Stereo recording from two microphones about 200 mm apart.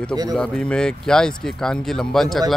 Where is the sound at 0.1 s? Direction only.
20° right (ahead or behind).